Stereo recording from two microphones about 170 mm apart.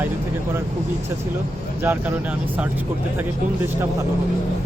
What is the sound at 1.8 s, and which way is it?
Speech, 10° right (ahead or behind).